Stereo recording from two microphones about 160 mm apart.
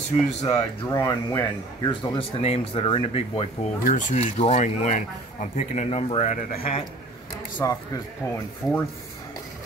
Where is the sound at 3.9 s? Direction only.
50° left (ahead or behind).